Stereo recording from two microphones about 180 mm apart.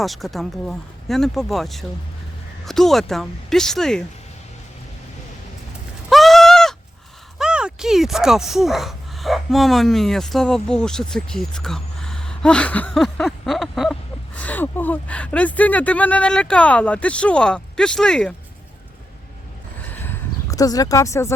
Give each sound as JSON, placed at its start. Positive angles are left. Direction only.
{"t": 0.0, "sound": "speech", "side_deg": 0}
{"t": 6.1, "sound": "goat", "side_deg": 0}
{"t": 7.3, "sound": "speech", "side_deg": -5}
{"t": 19.8, "sound": "a sound", "side_deg": 10}